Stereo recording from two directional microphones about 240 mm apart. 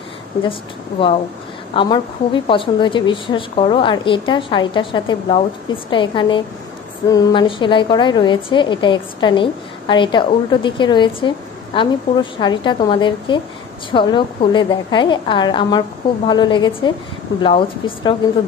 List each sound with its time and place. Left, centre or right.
0.4 s a woman's voice: left